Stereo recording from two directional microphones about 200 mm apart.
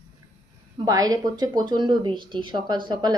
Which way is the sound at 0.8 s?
20° right (ahead or behind).